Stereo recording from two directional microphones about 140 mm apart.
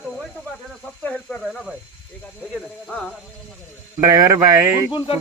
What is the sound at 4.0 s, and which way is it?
Speech, 25° right (ahead or behind).